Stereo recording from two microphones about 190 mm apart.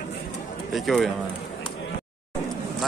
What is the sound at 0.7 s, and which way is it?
Speech, centre (ahead or behind).